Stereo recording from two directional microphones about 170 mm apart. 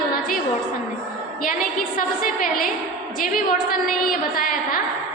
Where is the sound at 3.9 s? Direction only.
55° left (ahead or behind).